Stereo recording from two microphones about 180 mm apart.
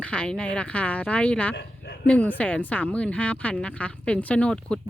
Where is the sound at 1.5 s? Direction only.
70° left (ahead or behind).